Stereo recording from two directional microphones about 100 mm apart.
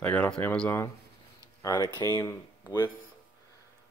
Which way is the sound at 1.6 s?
40° left (ahead or behind).